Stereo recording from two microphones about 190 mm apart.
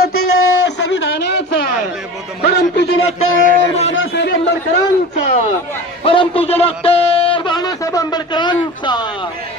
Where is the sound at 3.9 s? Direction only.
80° left.